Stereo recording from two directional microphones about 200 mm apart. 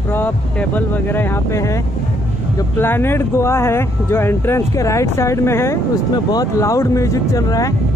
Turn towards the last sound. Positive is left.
turn(degrees=15)  # may be behind; listen again after turning